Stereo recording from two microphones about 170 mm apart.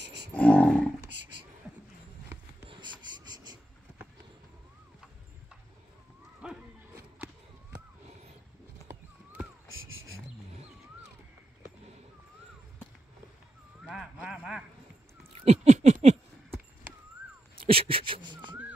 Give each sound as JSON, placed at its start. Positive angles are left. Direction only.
{"t": 0.0, "sound": "cattle", "side_deg": -90}
{"t": 0.3, "sound": "cattle", "side_deg": 5}
{"t": 2.7, "sound": "insect", "side_deg": -25}
{"t": 6.4, "sound": "music", "side_deg": -5}
{"t": 13.8, "sound": "horse", "side_deg": -5}
{"t": 15.4, "sound": "a sound", "side_deg": -40}
{"t": 17.6, "sound": "dog", "side_deg": -30}